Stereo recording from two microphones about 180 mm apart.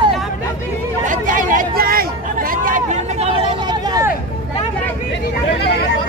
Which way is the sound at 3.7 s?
20° right (ahead or behind).